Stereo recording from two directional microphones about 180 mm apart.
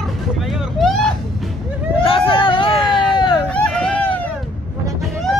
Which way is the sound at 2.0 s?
30° left (ahead or behind).